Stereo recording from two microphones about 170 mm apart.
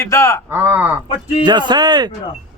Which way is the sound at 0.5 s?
10° right (ahead or behind).